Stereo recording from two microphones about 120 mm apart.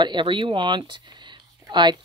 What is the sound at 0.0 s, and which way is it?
Speech, 40° right (ahead or behind).